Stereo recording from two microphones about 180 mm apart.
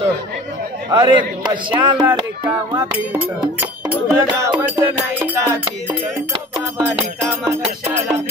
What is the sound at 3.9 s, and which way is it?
Music, 10° right (ahead or behind).